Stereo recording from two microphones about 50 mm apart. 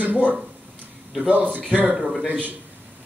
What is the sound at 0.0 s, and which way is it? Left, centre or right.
A man's voice, right.